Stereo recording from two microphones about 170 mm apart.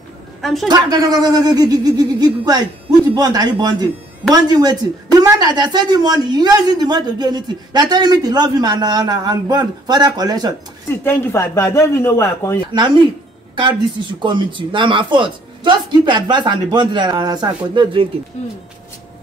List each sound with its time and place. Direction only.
0.4 s a woman's voice: centre (ahead or behind)
0.7 s speech: 20° right (ahead or behind)
11.1 s speech: 15° left (ahead or behind)
12.7 s speech: 25° right (ahead or behind)
14.2 s speech: 30° right (ahead or behind)